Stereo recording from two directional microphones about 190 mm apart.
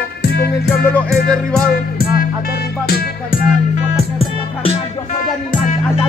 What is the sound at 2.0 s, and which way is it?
Music, 50° left (ahead or behind).